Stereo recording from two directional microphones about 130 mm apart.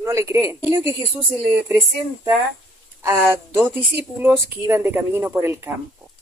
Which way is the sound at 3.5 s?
15° right (ahead or behind).